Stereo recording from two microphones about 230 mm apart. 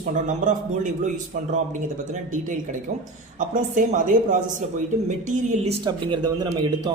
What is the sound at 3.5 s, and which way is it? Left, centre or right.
Speech, right.